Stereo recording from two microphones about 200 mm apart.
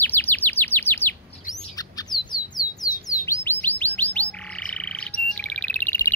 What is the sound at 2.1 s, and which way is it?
Bird, 20° right (ahead or behind).